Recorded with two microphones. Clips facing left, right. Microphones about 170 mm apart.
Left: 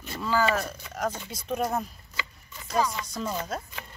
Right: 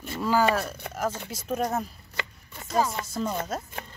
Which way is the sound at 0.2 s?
10° right (ahead or behind).